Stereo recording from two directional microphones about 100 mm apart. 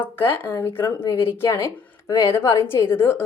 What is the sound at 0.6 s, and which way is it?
A woman's voice, 20° left (ahead or behind).